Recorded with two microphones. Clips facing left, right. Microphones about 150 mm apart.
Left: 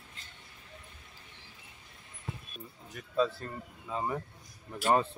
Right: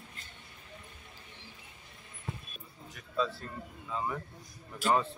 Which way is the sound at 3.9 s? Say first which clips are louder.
Left 1 dB; 35° left (ahead or behind).